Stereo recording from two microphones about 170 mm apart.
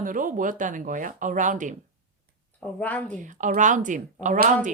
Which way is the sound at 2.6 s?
10° left (ahead or behind).